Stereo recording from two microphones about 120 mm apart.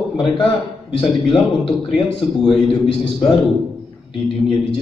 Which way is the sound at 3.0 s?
45° left (ahead or behind).